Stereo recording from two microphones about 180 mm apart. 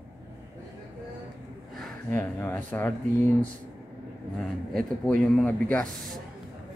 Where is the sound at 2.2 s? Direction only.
10° left (ahead or behind).